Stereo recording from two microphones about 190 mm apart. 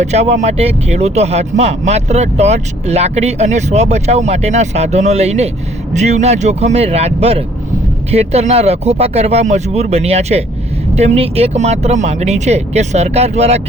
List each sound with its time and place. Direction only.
0.0 s speech: 35° right (ahead or behind)